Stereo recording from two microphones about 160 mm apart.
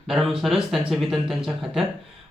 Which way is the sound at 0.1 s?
Centre (ahead or behind).